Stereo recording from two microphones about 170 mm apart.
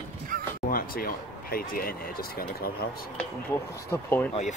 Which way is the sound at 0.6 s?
60° left (ahead or behind).